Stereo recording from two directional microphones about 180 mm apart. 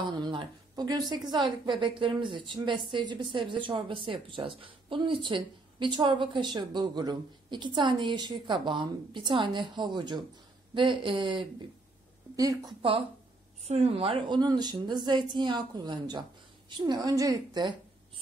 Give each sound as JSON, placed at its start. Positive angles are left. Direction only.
{"t": 0.0, "sound": "a woman's voice", "side_deg": -25}